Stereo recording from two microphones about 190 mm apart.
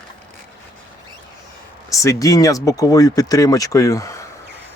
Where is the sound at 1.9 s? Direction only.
15° left (ahead or behind).